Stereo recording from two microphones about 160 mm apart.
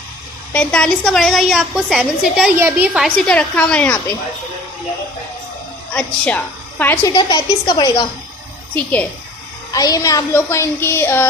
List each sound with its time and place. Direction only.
0.5 s a woman's voice: 5° left (ahead or behind)
2.6 s a woman's voice: 15° right (ahead or behind); by 4.0 s 10° left (ahead or behind)
5.9 s a woman's voice: 10° left (ahead or behind)
7.1 s a woman's voice: 25° left (ahead or behind)
8.7 s a woman's voice: 10° left (ahead or behind)
9.7 s a woman's voice: 20° left (ahead or behind)